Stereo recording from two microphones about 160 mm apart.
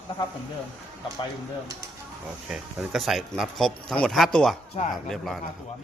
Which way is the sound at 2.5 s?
Centre (ahead or behind).